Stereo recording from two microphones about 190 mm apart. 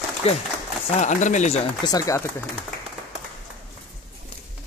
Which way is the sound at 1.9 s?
20° left (ahead or behind).